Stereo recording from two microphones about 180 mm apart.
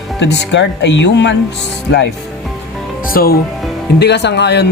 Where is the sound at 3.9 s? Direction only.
70° left (ahead or behind).